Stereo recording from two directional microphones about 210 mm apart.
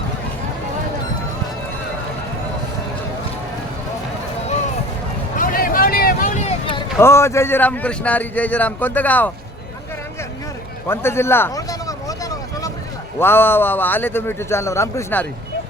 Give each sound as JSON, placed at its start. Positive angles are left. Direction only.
{"t": 5.4, "sound": "vehicle", "side_deg": 40}
{"t": 7.0, "sound": "a man's voice", "side_deg": 10}
{"t": 10.8, "sound": "a sound", "side_deg": 10}
{"t": 13.1, "sound": "a man's voice", "side_deg": 10}